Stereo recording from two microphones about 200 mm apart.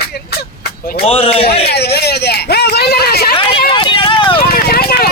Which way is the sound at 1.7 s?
55° left (ahead or behind).